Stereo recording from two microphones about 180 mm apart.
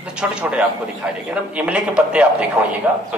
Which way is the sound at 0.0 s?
5° right (ahead or behind).